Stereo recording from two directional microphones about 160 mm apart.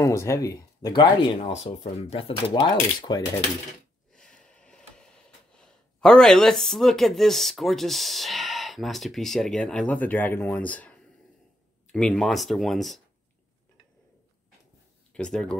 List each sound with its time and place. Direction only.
0.0 s speech: 20° left (ahead or behind)
1.4 s speech: 40° left (ahead or behind)
4.1 s a sound: 5° left (ahead or behind)
11.9 s speech: 5° left (ahead or behind)
15.1 s speech: 5° left (ahead or behind)